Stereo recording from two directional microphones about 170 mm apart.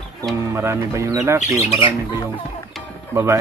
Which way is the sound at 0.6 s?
15° right (ahead or behind).